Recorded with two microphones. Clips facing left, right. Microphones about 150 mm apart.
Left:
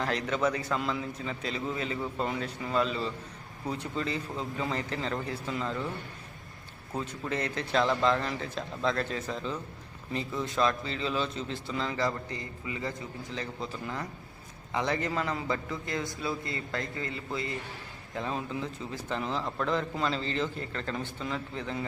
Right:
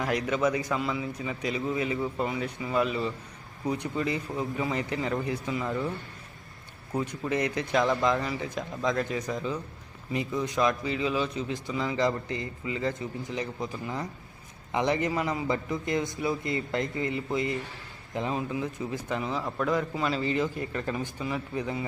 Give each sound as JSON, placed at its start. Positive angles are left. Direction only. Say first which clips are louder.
{"t": 0.0, "sound": "a man's voice", "louder": "right 2 dB", "side_deg": -10}
{"t": 6.9, "sound": "a man's voice", "louder": "right 4 dB", "side_deg": -15}